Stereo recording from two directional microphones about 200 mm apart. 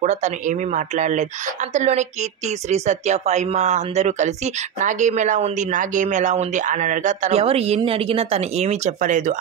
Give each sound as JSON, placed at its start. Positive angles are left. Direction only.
{"t": 0.0, "sound": "a woman's voice", "side_deg": -35}